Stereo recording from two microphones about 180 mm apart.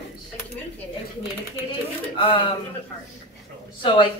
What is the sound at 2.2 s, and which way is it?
Speech, 30° left (ahead or behind).